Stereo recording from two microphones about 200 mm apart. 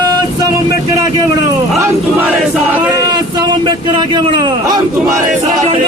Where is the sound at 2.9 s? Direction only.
20° right (ahead or behind).